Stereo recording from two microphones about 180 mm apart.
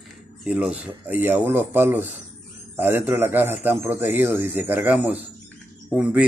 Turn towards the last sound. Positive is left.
turn(degrees=-5)  # may be behind; listen again after turning